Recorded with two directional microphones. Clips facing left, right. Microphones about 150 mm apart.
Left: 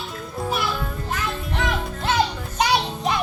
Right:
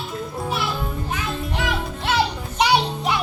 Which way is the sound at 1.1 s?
5° right (ahead or behind).